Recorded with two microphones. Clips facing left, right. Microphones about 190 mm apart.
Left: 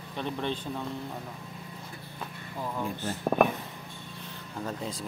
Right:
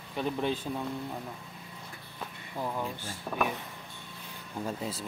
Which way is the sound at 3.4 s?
55° left (ahead or behind).